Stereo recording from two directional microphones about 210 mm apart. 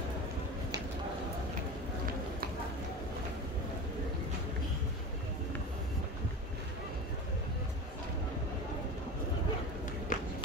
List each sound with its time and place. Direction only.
10.1 s run: 40° left (ahead or behind)